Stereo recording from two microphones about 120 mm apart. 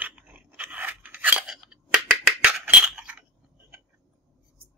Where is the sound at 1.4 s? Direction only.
5° right (ahead or behind).